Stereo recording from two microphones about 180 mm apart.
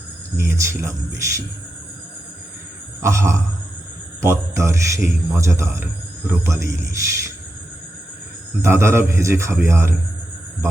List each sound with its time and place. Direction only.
0.3 s a man's voice: 15° right (ahead or behind)
3.0 s a man's voice: 15° right (ahead or behind)
8.6 s a man's voice: 15° right (ahead or behind)